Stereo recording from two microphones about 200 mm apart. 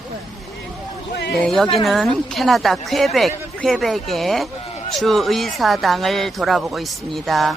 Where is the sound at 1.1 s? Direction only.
55° left (ahead or behind).